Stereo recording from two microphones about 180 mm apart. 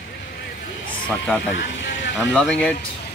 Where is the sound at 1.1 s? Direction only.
10° left (ahead or behind).